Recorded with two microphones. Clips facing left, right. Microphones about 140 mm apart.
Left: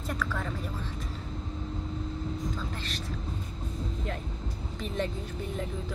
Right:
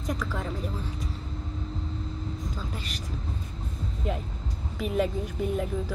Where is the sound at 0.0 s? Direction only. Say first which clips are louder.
Right 2 dB; 15° right (ahead or behind).